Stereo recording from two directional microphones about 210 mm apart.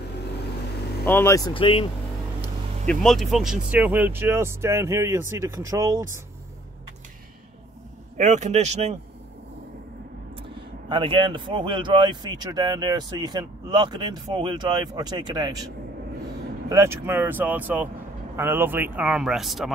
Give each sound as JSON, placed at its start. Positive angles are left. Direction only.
{"t": 1.0, "sound": "speech", "side_deg": 10}
{"t": 2.9, "sound": "a man's voice", "side_deg": 0}
{"t": 8.2, "sound": "speech", "side_deg": -35}
{"t": 10.9, "sound": "a man's voice", "side_deg": -25}